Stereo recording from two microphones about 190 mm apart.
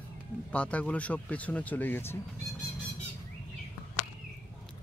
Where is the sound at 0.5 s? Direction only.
5° left (ahead or behind).